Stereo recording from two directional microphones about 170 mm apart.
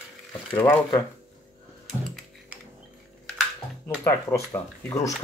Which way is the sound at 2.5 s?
10° right (ahead or behind).